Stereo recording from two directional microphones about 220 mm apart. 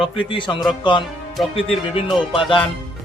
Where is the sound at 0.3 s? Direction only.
20° left (ahead or behind).